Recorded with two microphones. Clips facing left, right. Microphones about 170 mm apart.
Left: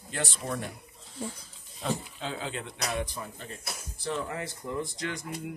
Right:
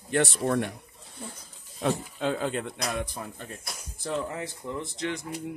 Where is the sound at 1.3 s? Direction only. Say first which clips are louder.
Right 2 dB; 60° right (ahead or behind).